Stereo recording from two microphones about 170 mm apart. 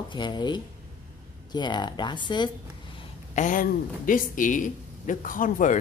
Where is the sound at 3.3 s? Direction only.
50° left (ahead or behind).